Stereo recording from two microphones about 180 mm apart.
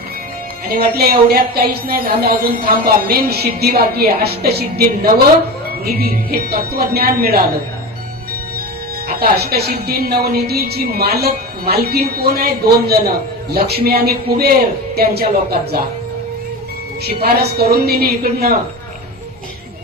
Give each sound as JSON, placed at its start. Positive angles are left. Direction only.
{"t": 0.7, "sound": "a woman's voice", "side_deg": -55}
{"t": 9.0, "sound": "a woman's voice", "side_deg": -60}
{"t": 17.2, "sound": "a woman's voice", "side_deg": -60}